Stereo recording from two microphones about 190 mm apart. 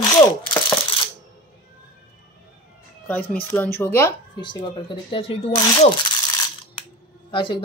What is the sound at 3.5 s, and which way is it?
Speech, 10° left (ahead or behind).